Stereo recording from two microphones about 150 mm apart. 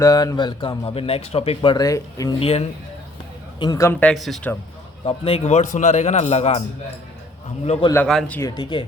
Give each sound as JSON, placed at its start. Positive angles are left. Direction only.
{"t": 0.0, "sound": "speech", "side_deg": 25}
{"t": 1.7, "sound": "speech", "side_deg": 25}
{"t": 2.4, "sound": "speech", "side_deg": 40}
{"t": 3.6, "sound": "speech", "side_deg": 20}
{"t": 4.0, "sound": "speech", "side_deg": 0}
{"t": 5.0, "sound": "a man's voice", "side_deg": 40}
{"t": 7.6, "sound": "a man's voice", "side_deg": 45}
{"t": 7.9, "sound": "speech", "side_deg": 5}
{"t": 8.4, "sound": "speech", "side_deg": 25}